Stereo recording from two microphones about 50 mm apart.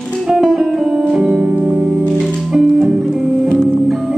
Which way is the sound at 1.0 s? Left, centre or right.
Centre.